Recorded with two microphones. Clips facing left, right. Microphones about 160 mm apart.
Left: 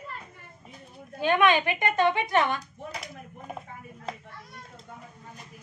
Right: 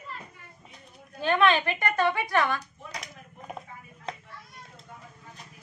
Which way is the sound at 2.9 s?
5° left (ahead or behind).